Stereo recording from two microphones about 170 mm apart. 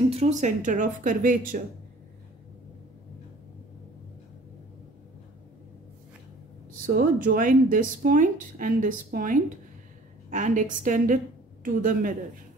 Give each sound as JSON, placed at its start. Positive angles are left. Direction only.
{"t": 0.1, "sound": "speech", "side_deg": -40}
{"t": 6.9, "sound": "speech", "side_deg": -55}